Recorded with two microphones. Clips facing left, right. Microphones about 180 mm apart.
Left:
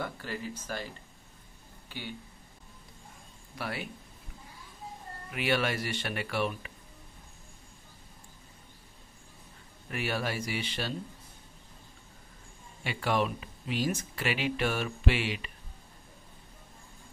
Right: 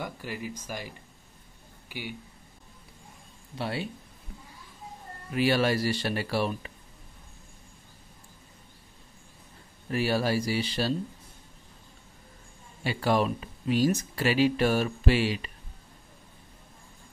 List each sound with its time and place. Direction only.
0.0 s speech: 15° right (ahead or behind)
3.5 s speech: 25° right (ahead or behind)
5.3 s speech: 35° right (ahead or behind)
9.8 s speech: 35° right (ahead or behind)
12.8 s speech: 35° right (ahead or behind)